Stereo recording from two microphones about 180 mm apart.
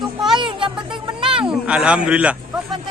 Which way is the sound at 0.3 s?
25° right (ahead or behind).